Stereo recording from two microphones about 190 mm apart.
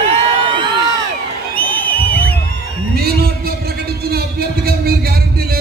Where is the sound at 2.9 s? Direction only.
55° right (ahead or behind).